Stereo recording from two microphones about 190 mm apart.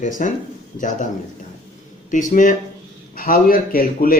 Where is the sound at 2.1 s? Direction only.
45° left (ahead or behind).